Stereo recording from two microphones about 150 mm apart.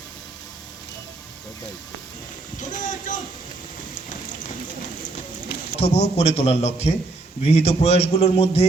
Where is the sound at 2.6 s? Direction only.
55° left (ahead or behind).